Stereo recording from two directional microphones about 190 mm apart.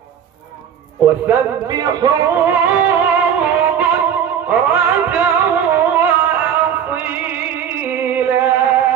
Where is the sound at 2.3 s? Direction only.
10° right (ahead or behind).